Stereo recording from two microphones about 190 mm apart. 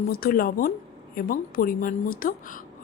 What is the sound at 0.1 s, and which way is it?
A woman's voice, 50° left (ahead or behind).